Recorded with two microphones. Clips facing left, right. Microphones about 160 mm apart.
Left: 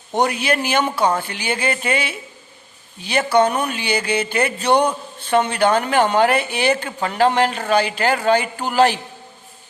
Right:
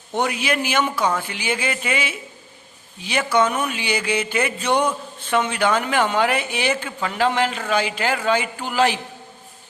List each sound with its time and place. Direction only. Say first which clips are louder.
0.1 s a man's voice: left 3 dB; 35° left (ahead or behind)